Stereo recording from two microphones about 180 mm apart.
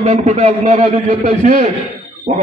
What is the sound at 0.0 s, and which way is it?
A man's voice, 35° right (ahead or behind).